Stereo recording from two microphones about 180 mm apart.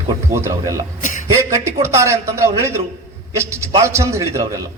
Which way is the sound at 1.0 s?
45° left (ahead or behind).